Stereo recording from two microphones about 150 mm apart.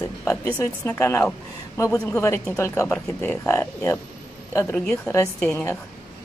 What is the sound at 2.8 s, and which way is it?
Speech, 5° left (ahead or behind).